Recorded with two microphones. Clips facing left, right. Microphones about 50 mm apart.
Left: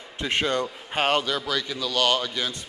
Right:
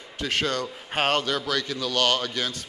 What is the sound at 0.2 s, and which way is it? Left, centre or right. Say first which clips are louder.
Speech: left 2 dB; left.